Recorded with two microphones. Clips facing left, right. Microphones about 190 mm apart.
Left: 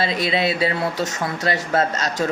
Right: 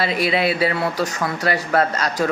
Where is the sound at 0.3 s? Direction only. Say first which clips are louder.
Right 2 dB; 25° left (ahead or behind).